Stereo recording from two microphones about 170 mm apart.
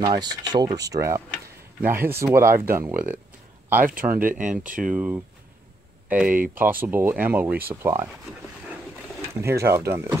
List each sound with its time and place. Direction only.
0.0 s speech: 25° right (ahead or behind)
4.2 s speech: 50° right (ahead or behind)
4.8 s speech: 5° right (ahead or behind)
9.4 s speech: 15° right (ahead or behind)